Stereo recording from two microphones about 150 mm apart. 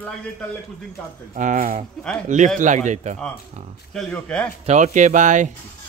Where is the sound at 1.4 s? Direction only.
65° right (ahead or behind).